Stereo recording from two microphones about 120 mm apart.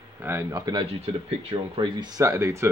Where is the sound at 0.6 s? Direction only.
35° right (ahead or behind).